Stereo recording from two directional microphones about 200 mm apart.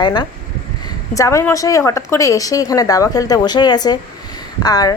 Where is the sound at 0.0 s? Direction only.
20° left (ahead or behind).